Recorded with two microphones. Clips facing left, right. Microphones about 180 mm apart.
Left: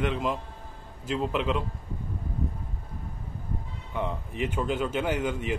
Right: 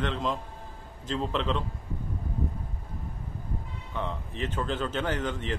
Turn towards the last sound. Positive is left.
turn(degrees=10)  # may be behind; listen again after turning